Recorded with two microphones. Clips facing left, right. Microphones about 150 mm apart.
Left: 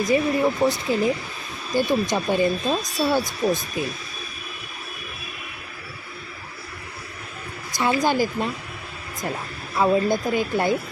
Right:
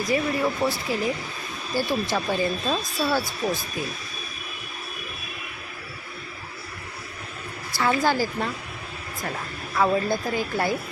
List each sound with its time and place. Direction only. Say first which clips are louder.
0.1 s speech: left 3 dB; 20° left (ahead or behind)
7.7 s speech: left 1 dB; 15° left (ahead or behind)
9.7 s speech: left 3 dB; 20° left (ahead or behind)